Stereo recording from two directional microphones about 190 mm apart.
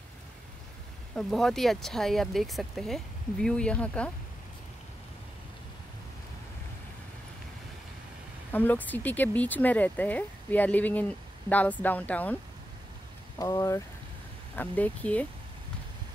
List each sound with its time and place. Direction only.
1.1 s speech: centre (ahead or behind)
8.5 s speech: 10° left (ahead or behind)
13.4 s speech: 15° left (ahead or behind)